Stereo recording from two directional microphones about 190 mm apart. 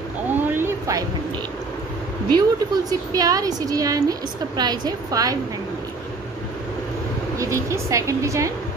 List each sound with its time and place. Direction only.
0.4 s a sound: 10° right (ahead or behind)
2.3 s a woman's voice: 20° right (ahead or behind)
7.3 s speech: 15° right (ahead or behind)